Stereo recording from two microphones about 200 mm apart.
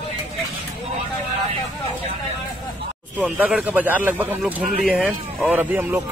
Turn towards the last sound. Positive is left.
turn(degrees=-10)  # may be behind; listen again after turning